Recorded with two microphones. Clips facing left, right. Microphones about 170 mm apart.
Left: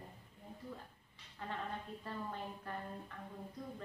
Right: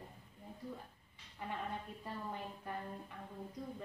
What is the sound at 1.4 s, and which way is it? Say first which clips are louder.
A woman's voice: right 1 dB; 10° right (ahead or behind).